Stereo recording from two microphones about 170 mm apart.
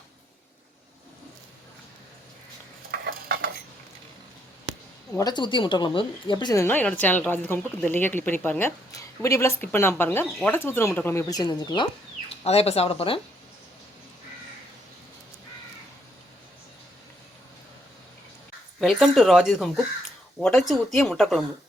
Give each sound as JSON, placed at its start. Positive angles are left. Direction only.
{"t": 2.9, "sound": "stir", "side_deg": -65}
{"t": 5.1, "sound": "speech", "side_deg": 25}
{"t": 18.8, "sound": "speech", "side_deg": 0}